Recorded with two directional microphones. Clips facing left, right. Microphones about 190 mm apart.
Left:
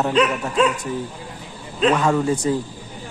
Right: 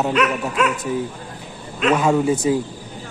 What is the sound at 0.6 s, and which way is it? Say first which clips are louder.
Speech: left 3 dB; 30° left (ahead or behind).